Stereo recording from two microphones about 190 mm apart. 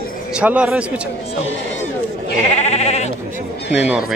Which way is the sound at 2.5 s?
35° left (ahead or behind).